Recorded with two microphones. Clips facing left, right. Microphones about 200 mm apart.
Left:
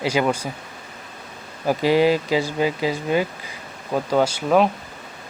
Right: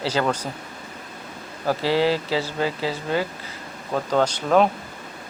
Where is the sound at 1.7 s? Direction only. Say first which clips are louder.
Left 3 dB; 15° left (ahead or behind).